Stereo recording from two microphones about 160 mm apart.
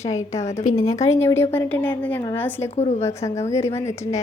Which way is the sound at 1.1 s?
15° left (ahead or behind).